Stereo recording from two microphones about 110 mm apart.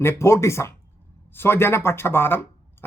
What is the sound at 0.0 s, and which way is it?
Speech, 25° left (ahead or behind).